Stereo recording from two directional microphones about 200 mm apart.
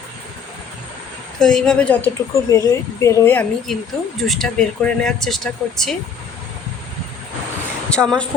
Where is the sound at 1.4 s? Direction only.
Centre (ahead or behind).